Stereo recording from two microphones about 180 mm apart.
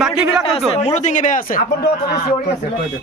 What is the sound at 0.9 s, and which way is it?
Speech, 45° left (ahead or behind).